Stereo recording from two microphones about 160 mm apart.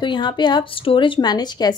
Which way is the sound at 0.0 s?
30° left (ahead or behind).